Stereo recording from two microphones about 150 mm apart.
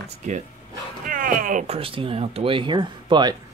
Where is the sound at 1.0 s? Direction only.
65° right (ahead or behind).